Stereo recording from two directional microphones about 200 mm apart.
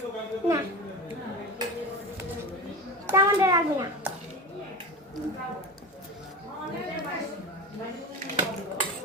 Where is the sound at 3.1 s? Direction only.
15° right (ahead or behind).